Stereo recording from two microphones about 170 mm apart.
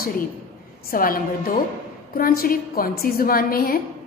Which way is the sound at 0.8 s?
55° left (ahead or behind).